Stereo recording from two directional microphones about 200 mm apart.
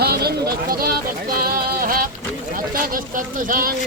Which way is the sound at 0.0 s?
50° right (ahead or behind).